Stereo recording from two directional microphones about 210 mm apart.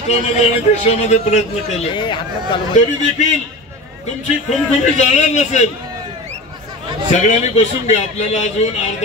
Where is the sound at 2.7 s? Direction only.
35° left (ahead or behind).